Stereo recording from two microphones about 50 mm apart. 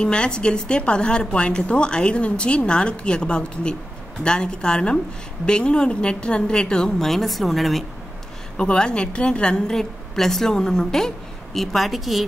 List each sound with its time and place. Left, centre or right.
0.0 s a woman's voice: centre
8.5 s a woman's voice: centre